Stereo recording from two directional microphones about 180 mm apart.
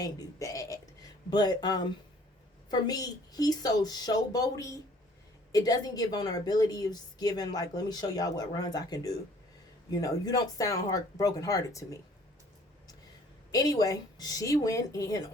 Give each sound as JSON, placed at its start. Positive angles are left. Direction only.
{"t": 0.0, "sound": "a woman's voice", "side_deg": 20}
{"t": 13.5, "sound": "a woman's voice", "side_deg": 20}